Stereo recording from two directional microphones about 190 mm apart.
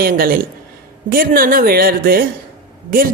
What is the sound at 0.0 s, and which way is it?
Speech, 50° right (ahead or behind).